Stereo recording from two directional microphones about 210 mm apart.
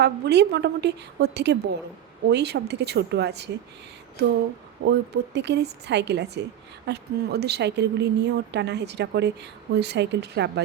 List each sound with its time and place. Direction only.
0.0 s a woman's voice: 55° right (ahead or behind)
4.9 s a woman's voice: 55° right (ahead or behind)